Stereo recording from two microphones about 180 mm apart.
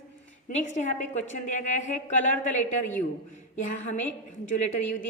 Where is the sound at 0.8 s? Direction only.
40° left (ahead or behind).